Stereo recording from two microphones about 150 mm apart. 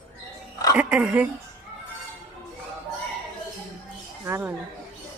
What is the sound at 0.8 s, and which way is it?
Speech, 10° right (ahead or behind).